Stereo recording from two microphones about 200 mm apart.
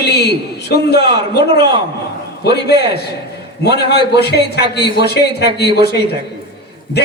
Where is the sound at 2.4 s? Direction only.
55° left (ahead or behind).